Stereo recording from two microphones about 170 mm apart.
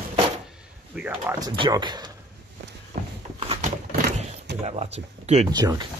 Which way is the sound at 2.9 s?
55° right (ahead or behind).